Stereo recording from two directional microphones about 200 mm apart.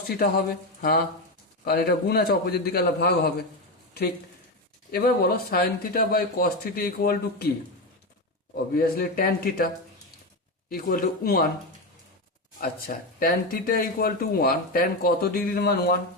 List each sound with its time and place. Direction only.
0.2 s speech: 50° left (ahead or behind)
4.9 s speech: 50° left (ahead or behind)
8.7 s speech: 50° left (ahead or behind)
13.1 s speech: 45° left (ahead or behind)